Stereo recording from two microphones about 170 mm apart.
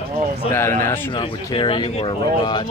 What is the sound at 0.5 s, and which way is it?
Speech, 15° left (ahead or behind).